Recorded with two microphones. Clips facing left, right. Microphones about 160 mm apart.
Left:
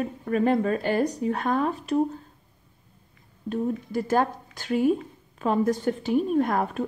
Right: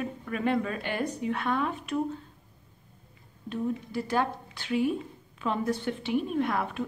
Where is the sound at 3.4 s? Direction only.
45° left (ahead or behind).